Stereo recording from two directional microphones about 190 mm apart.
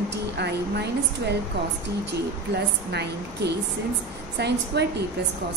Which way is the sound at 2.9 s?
60° right (ahead or behind).